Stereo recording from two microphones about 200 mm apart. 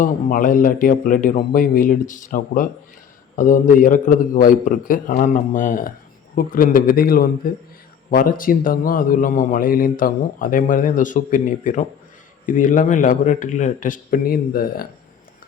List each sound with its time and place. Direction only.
0.0 s a man's voice: 40° left (ahead or behind)